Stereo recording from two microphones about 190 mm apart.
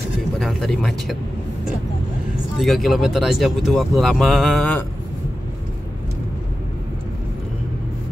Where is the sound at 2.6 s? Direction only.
Centre (ahead or behind).